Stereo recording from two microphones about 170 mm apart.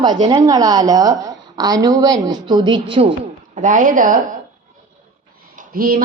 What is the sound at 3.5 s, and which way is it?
Speech, 50° right (ahead or behind).